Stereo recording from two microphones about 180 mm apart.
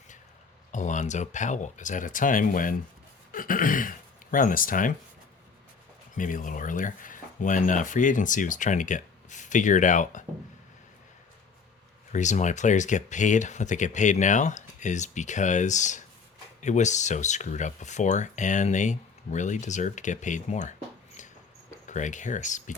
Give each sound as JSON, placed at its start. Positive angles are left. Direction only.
{"t": 0.7, "sound": "speech", "side_deg": 45}
{"t": 6.1, "sound": "speech", "side_deg": 45}
{"t": 12.1, "sound": "speech", "side_deg": 40}
{"t": 21.8, "sound": "speech", "side_deg": 45}